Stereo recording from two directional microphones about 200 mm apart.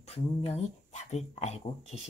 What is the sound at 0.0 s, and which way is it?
Speech, 30° left (ahead or behind).